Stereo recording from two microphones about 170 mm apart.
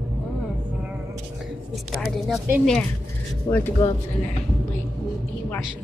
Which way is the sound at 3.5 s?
10° left (ahead or behind).